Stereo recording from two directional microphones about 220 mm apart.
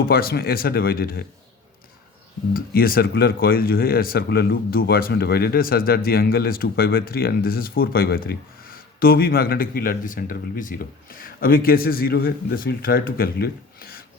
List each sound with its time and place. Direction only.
0.0 s speech: 40° left (ahead or behind)
2.5 s speech: 40° left (ahead or behind)